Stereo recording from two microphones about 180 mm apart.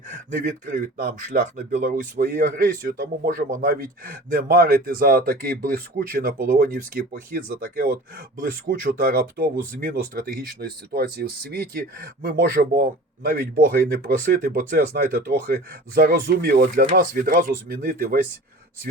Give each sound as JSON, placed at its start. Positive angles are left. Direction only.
{"t": 0.1, "sound": "speech", "side_deg": -45}